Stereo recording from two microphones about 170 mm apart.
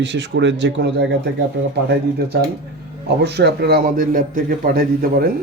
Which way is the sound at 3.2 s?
75° right (ahead or behind).